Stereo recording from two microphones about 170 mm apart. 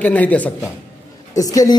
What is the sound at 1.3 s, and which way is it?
Speech, 20° left (ahead or behind).